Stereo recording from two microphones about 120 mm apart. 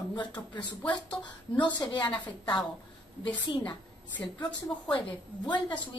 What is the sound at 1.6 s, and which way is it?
Speech, 40° left (ahead or behind).